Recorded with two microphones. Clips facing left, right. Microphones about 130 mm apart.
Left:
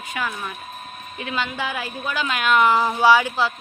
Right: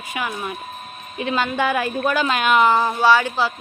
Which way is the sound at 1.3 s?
50° right (ahead or behind).